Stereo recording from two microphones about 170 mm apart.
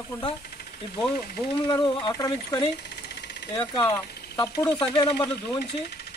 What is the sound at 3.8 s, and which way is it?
Speech, 20° left (ahead or behind).